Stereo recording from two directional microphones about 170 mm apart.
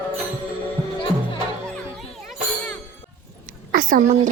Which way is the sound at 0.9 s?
30° left (ahead or behind).